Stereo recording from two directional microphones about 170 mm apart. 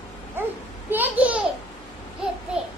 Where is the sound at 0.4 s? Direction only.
15° right (ahead or behind).